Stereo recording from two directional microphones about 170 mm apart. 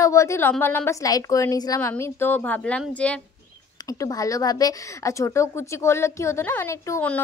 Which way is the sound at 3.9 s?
20° left (ahead or behind).